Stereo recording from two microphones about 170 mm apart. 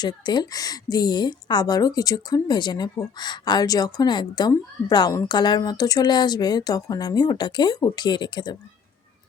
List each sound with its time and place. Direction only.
0.0 s a woman's voice: 25° left (ahead or behind)